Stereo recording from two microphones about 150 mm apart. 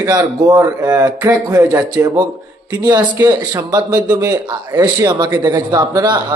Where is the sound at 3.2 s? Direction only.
25° right (ahead or behind).